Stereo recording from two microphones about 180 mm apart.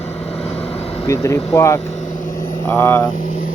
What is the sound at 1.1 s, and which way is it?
Speech, 15° left (ahead or behind).